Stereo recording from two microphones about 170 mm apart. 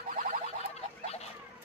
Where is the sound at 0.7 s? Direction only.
40° left (ahead or behind).